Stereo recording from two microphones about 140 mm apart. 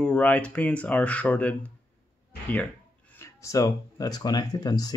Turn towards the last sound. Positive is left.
turn(degrees=25)  # may be behind; listen again after turning